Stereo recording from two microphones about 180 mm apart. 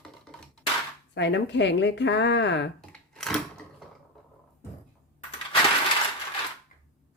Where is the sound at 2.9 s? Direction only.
5° left (ahead or behind).